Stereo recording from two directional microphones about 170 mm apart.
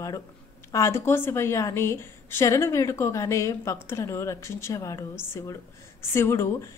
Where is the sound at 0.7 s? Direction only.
15° left (ahead or behind).